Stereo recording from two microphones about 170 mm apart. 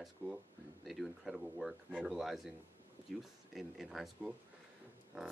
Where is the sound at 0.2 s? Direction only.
20° right (ahead or behind).